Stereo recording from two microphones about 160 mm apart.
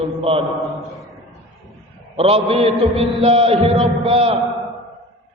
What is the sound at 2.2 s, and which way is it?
Chant, 40° right (ahead or behind).